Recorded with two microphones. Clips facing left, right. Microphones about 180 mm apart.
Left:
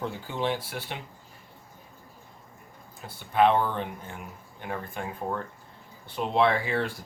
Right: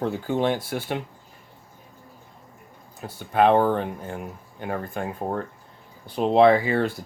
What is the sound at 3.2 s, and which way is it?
Speech, 45° right (ahead or behind).